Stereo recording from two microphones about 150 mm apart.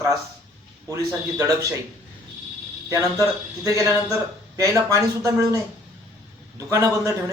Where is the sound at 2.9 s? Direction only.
20° right (ahead or behind).